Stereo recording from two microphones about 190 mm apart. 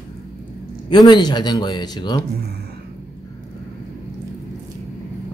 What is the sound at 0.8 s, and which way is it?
Speech, 20° left (ahead or behind).